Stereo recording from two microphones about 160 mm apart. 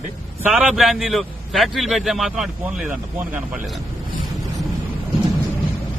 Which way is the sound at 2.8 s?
55° right (ahead or behind).